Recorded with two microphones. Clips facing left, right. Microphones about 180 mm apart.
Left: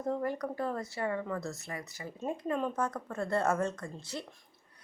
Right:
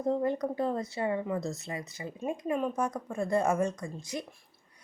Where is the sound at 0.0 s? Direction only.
20° right (ahead or behind).